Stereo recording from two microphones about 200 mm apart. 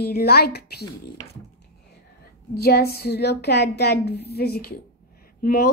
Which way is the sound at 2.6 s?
50° left (ahead or behind).